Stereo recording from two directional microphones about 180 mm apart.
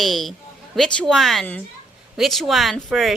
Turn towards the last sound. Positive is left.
turn(degrees=0)  # may be behind; listen again after turning